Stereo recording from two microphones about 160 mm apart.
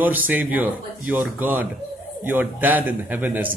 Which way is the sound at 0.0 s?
10° right (ahead or behind).